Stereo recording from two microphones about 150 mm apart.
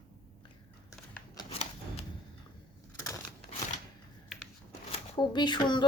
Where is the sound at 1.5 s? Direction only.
40° left (ahead or behind).